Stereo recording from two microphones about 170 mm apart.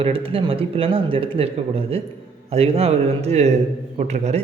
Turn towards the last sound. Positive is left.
turn(degrees=-40)  # may be behind; listen again after turning